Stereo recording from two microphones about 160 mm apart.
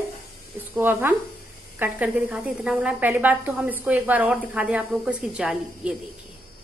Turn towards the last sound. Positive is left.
turn(degrees=-5)  # may be behind; listen again after turning